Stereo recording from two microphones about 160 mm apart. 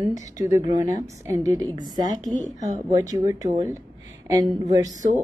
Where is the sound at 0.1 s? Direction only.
20° right (ahead or behind).